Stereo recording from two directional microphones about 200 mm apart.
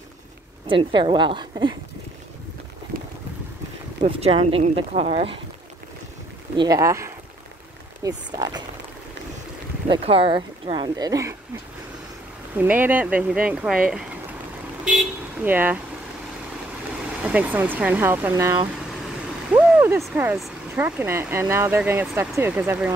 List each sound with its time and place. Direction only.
0.7 s speech: 25° right (ahead or behind)
4.0 s speech: 30° right (ahead or behind)
6.5 s speech: 20° right (ahead or behind)
9.8 s speech: 25° right (ahead or behind)
12.5 s speech: 10° right (ahead or behind)
17.2 s speech: 5° right (ahead or behind)
18.9 s vehicle: 5° right (ahead or behind)
20.2 s speech: 5° right (ahead or behind)